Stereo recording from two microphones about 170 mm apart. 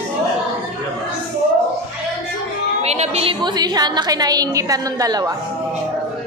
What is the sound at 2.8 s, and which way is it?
A woman's voice, 40° right (ahead or behind).